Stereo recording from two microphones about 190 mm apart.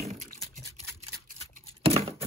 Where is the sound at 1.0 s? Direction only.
30° right (ahead or behind).